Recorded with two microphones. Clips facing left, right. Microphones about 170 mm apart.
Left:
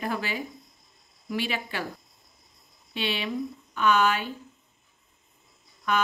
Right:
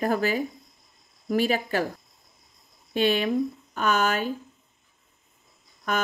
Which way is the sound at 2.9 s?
45° right (ahead or behind).